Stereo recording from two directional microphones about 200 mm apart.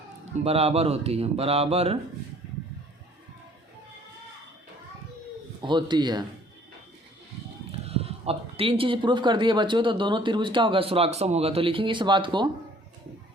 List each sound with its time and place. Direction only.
0.4 s speech: 30° right (ahead or behind)
5.6 s speech: 20° right (ahead or behind)
7.7 s speech: 30° right (ahead or behind)